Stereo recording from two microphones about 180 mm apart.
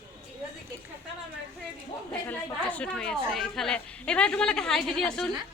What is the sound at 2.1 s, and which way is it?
A woman's voice, 10° left (ahead or behind).